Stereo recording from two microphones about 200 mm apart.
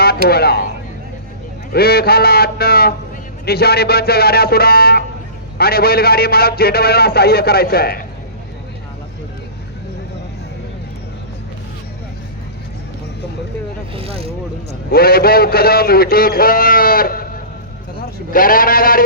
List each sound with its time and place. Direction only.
0.3 s a man's voice: 55° left (ahead or behind)
1.7 s a man's voice: 50° left (ahead or behind)
13.9 s speech: 30° right (ahead or behind)
14.8 s a man's voice: 50° left (ahead or behind)